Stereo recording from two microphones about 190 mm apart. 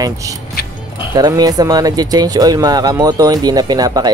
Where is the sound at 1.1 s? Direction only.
20° right (ahead or behind).